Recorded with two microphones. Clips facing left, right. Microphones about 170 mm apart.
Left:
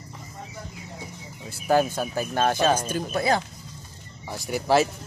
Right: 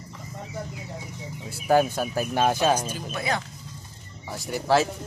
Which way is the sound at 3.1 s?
35° left (ahead or behind).